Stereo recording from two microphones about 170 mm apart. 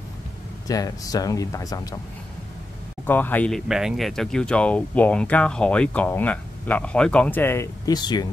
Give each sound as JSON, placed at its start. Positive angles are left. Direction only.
{"t": 0.7, "sound": "speech", "side_deg": 20}
{"t": 3.1, "sound": "speech", "side_deg": 10}